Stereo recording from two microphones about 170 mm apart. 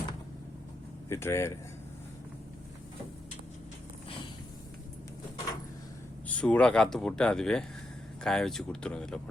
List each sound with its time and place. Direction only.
1.1 s speech: 15° left (ahead or behind)
6.2 s speech: 10° left (ahead or behind)